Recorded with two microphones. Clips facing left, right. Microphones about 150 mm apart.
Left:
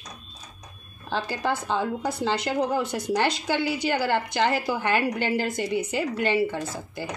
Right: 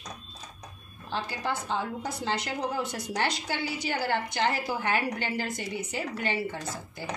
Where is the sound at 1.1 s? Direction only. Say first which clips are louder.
Left 5 dB; 90° left.